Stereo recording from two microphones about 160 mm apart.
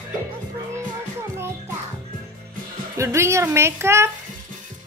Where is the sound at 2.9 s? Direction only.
15° right (ahead or behind).